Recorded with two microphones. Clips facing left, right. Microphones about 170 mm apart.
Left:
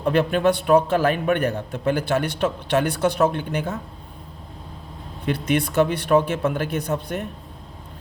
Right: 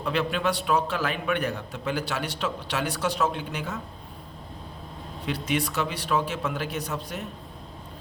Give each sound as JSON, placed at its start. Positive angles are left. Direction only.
{"t": 0.0, "sound": "a man's voice", "side_deg": 50}
{"t": 5.2, "sound": "speech", "side_deg": 55}